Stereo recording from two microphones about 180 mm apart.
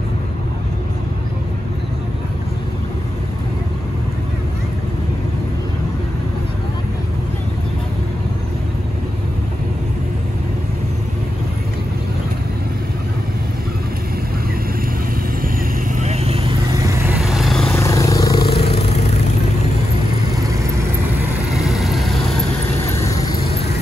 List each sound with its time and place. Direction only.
16.0 s vehicle: 35° right (ahead or behind)
16.7 s vehicle: 20° right (ahead or behind)
17.2 s vehicle: centre (ahead or behind)
17.7 s a sound: 20° left (ahead or behind)
18.6 s vehicle: 35° left (ahead or behind)
21.5 s vehicle: centre (ahead or behind)